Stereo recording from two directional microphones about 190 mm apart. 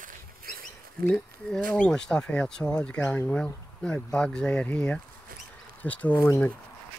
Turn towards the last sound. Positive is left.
turn(degrees=10)  # may be behind; listen again after turning